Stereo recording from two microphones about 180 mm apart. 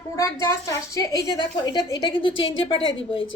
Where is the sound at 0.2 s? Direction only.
15° left (ahead or behind).